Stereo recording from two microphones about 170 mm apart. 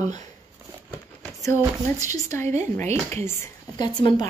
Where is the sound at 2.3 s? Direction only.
15° left (ahead or behind).